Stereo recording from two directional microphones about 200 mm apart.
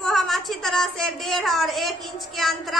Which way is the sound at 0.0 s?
Centre (ahead or behind).